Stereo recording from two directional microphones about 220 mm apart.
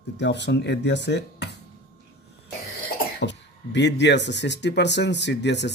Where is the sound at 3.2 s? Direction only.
55° left (ahead or behind).